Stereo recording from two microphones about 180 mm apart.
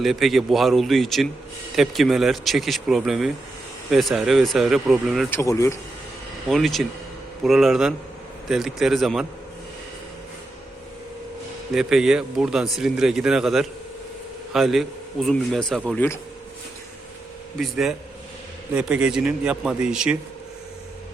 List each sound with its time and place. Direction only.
0.0 s a man's voice: centre (ahead or behind)
5.3 s speech: 15° left (ahead or behind)
6.5 s a man's voice: centre (ahead or behind)
11.7 s a man's voice: centre (ahead or behind)
17.6 s a man's voice: centre (ahead or behind)